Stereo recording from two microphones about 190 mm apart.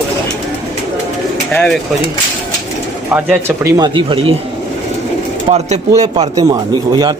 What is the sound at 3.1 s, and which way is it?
Speech, 10° right (ahead or behind).